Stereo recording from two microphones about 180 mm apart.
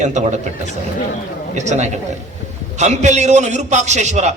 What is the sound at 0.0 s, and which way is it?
Speech, 40° right (ahead or behind).